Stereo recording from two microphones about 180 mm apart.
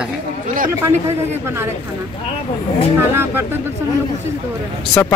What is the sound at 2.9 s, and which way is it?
Speech, 15° right (ahead or behind).